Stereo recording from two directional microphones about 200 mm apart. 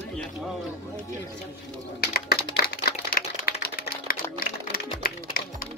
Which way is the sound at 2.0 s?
50° left (ahead or behind).